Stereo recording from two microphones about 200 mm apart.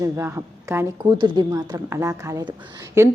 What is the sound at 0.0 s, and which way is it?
A woman's voice, 10° right (ahead or behind).